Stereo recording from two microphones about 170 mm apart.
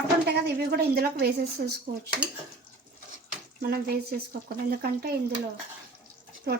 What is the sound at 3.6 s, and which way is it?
Speech, 65° right (ahead or behind).